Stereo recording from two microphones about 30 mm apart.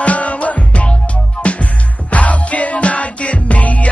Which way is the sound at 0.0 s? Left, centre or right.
Left.